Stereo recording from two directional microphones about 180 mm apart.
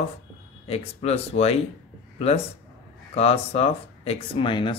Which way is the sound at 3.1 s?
35° left (ahead or behind).